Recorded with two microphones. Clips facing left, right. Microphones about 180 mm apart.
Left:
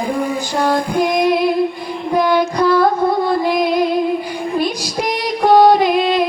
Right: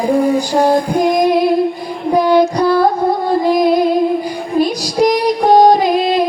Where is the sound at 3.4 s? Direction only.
40° right (ahead or behind).